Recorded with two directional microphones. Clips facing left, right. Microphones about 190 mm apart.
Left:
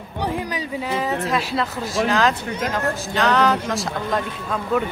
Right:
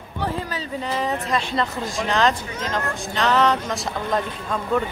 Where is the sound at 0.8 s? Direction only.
5° left (ahead or behind).